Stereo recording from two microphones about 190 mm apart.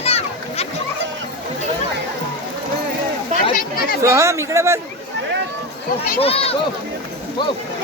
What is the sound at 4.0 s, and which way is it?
Speech, 15° right (ahead or behind).